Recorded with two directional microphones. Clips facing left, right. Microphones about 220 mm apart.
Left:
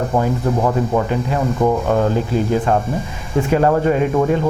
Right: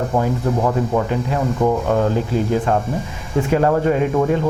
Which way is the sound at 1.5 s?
30° left (ahead or behind).